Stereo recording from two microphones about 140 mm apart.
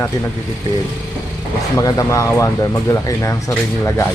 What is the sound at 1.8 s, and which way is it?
A man's voice, 25° left (ahead or behind).